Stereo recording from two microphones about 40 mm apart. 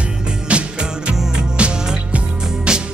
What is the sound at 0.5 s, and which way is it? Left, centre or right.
Music, right.